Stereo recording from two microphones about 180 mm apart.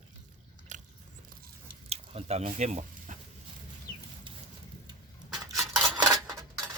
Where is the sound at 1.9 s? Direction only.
35° right (ahead or behind).